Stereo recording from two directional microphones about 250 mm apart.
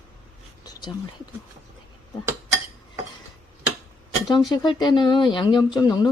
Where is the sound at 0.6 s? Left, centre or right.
Centre.